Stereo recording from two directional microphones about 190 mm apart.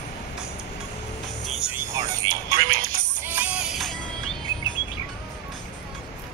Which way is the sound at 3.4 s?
5° right (ahead or behind).